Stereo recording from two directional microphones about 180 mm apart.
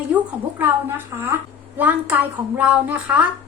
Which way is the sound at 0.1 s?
10° right (ahead or behind).